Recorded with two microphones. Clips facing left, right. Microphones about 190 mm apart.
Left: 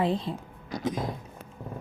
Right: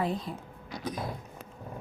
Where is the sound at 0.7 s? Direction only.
40° left (ahead or behind).